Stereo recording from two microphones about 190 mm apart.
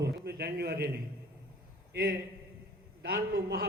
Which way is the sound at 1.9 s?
55° right (ahead or behind).